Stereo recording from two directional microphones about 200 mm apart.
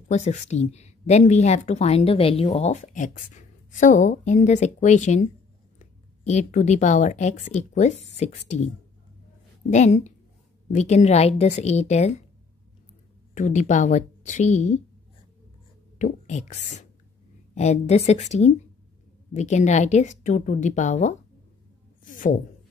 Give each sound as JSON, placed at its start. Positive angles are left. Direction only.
{"t": 0.1, "sound": "a woman's voice", "side_deg": 35}
{"t": 9.7, "sound": "a woman's voice", "side_deg": 35}
{"t": 13.3, "sound": "a woman's voice", "side_deg": 40}
{"t": 16.0, "sound": "a woman's voice", "side_deg": 35}